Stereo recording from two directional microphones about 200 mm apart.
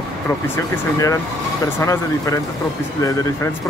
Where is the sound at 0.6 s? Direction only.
15° left (ahead or behind).